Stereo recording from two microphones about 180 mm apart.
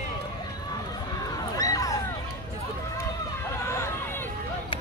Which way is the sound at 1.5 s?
20° left (ahead or behind).